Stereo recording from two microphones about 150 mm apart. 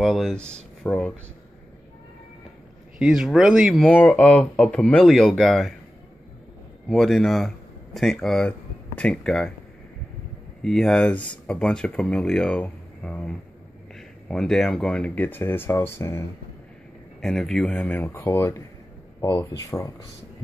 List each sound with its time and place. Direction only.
0.0 s speech: centre (ahead or behind)
3.0 s speech: 5° right (ahead or behind)
6.9 s speech: 5° left (ahead or behind)
10.6 s speech: 5° left (ahead or behind)
17.2 s speech: 5° left (ahead or behind); by 19.9 s 20° left (ahead or behind)